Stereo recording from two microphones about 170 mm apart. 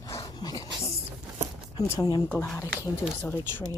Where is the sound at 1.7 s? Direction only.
25° left (ahead or behind).